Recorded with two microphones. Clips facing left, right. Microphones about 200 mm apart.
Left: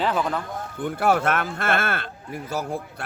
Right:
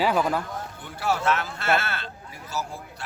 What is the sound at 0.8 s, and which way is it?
A man's voice, 55° left (ahead or behind).